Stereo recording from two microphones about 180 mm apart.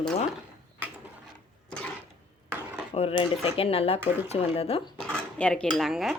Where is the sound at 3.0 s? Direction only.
35° left (ahead or behind).